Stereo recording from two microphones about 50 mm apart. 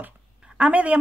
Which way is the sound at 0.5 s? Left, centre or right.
Right.